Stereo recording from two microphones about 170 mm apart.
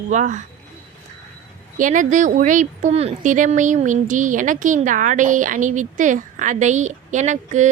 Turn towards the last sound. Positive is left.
turn(degrees=-45)  # may be behind; listen again after turning